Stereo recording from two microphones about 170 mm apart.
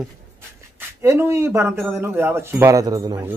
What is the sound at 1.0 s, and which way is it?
Speech, 15° right (ahead or behind).